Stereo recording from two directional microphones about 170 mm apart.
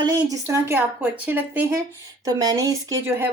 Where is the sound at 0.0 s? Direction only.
20° right (ahead or behind).